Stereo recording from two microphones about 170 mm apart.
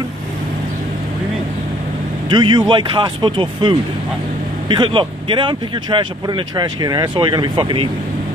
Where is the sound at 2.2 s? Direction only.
25° right (ahead or behind).